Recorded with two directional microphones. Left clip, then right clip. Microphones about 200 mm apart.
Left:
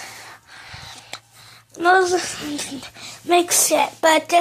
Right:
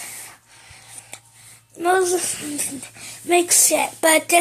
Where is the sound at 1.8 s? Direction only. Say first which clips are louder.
Left 3 dB; centre (ahead or behind).